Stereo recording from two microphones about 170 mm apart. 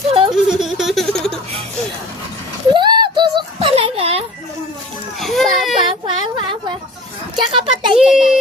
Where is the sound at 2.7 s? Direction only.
25° right (ahead or behind).